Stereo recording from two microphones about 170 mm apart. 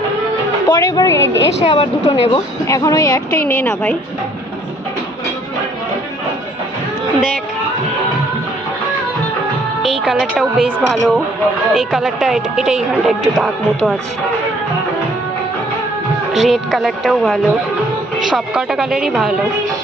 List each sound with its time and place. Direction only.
0.7 s a woman's voice: 20° left (ahead or behind)
1.6 s a woman's voice: 35° left (ahead or behind); by 3.9 s 10° left (ahead or behind)
9.8 s a woman's voice: centre (ahead or behind)
16.3 s a woman's voice: centre (ahead or behind)